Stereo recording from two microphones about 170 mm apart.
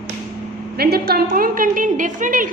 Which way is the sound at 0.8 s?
65° right (ahead or behind).